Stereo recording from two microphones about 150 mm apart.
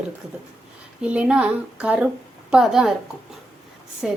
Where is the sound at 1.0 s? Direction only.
5° right (ahead or behind).